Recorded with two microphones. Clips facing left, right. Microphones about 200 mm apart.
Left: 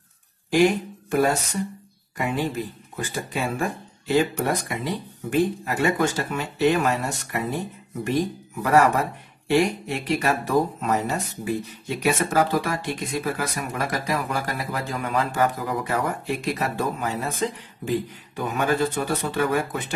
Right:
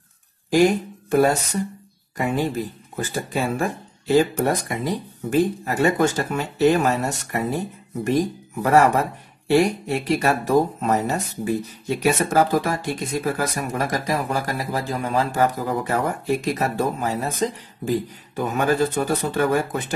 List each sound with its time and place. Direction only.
0.5 s a sound: 40° right (ahead or behind)
2.1 s speech: 40° right (ahead or behind)
9.5 s speech: 40° right (ahead or behind)